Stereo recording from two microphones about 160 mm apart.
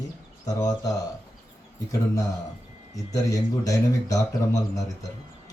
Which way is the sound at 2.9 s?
20° left (ahead or behind).